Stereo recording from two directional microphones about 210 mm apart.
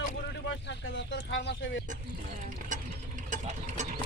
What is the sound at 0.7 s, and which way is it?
Speech, 60° left (ahead or behind).